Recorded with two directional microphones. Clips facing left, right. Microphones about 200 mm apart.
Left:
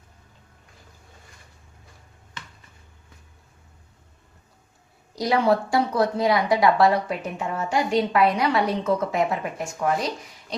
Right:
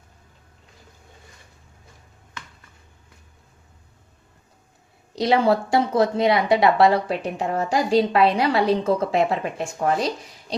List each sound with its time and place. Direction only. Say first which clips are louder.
5.1 s speech: right 2 dB; 25° right (ahead or behind)